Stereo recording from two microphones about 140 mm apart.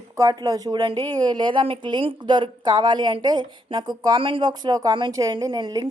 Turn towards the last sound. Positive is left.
turn(degrees=-30)  # may be behind; listen again after turning